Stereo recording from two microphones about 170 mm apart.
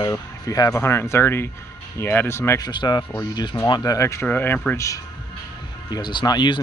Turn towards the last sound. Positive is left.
turn(degrees=25)  # may be behind; listen again after turning